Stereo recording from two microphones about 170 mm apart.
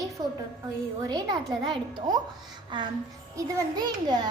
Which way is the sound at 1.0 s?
20° right (ahead or behind).